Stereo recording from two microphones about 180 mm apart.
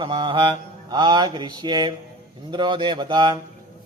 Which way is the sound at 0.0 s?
25° right (ahead or behind).